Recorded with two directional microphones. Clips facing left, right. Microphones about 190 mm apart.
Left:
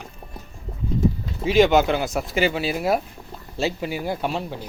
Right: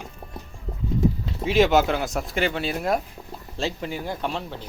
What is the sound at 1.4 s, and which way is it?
Speech, centre (ahead or behind).